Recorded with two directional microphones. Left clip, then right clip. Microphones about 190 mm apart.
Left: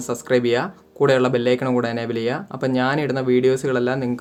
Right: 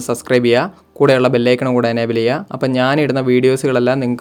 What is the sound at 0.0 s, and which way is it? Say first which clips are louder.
Speech: right 5 dB; 35° right (ahead or behind).